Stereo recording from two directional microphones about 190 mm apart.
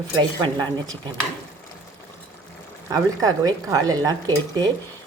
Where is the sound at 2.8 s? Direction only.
20° right (ahead or behind).